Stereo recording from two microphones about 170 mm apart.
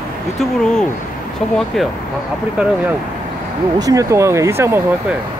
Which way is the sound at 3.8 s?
20° right (ahead or behind).